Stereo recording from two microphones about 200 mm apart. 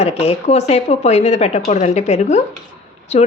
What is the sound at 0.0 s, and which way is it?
Speech, 30° left (ahead or behind).